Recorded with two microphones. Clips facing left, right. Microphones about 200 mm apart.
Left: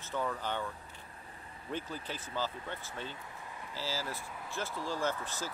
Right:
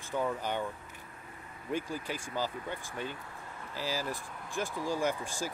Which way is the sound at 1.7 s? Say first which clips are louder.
Right 4 dB; 10° right (ahead or behind).